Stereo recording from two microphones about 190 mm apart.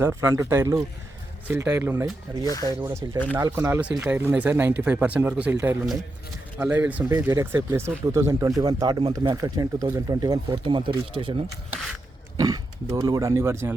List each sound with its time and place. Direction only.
0.0 s speech: 15° right (ahead or behind)
2.4 s speech: 20° left (ahead or behind)
2.8 s speech: 15° right (ahead or behind)
12.4 s speech: 20° right (ahead or behind)